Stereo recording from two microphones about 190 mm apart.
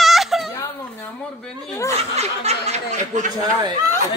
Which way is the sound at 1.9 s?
35° right (ahead or behind).